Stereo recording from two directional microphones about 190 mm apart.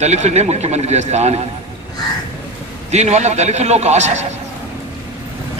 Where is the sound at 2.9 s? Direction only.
35° right (ahead or behind).